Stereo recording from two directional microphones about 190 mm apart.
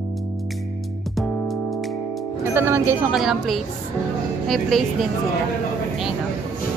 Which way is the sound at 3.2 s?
Centre (ahead or behind).